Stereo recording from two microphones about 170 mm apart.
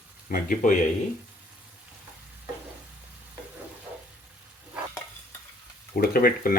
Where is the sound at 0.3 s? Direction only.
55° left (ahead or behind).